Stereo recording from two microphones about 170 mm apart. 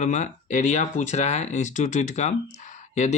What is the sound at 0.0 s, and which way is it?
Speech, 45° left (ahead or behind).